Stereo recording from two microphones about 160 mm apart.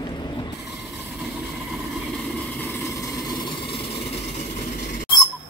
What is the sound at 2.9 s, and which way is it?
Vehicle, 30° left (ahead or behind).